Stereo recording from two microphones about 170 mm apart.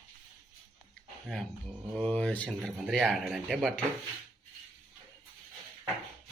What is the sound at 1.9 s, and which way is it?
Speech, 5° left (ahead or behind).